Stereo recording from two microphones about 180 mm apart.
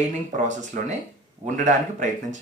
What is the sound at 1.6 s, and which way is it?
Speech, 45° right (ahead or behind).